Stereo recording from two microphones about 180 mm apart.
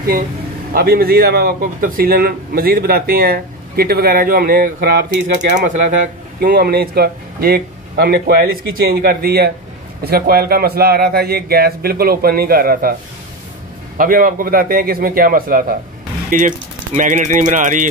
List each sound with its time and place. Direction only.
0.7 s a man's voice: 60° right (ahead or behind)
6.4 s a man's voice: 60° right (ahead or behind)
13.9 s a man's voice: 50° right (ahead or behind)